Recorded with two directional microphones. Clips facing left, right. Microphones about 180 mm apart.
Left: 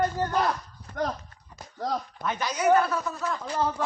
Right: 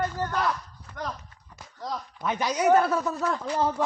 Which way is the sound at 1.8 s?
65° left (ahead or behind).